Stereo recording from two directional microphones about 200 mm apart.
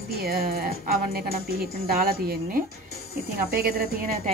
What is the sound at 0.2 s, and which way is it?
A woman's voice, 50° right (ahead or behind).